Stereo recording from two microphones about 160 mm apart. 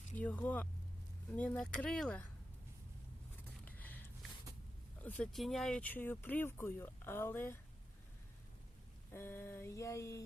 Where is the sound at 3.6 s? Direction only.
10° left (ahead or behind).